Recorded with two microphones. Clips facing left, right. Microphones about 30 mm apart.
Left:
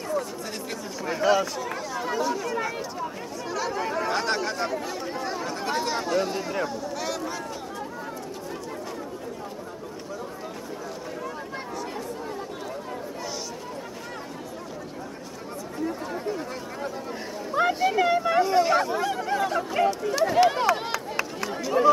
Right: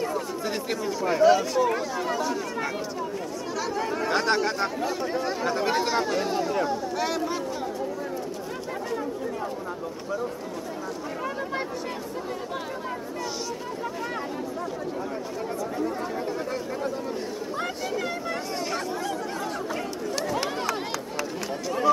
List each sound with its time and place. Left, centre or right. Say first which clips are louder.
0.8 s speech: right 4 dB; centre
6.7 s speech: right 3 dB; centre
17.6 s speech: left 10 dB; centre
20.3 s run: left 7 dB; centre